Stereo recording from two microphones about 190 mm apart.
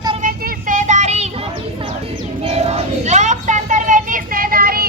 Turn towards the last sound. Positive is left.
turn(degrees=-50)  # may be behind; listen again after turning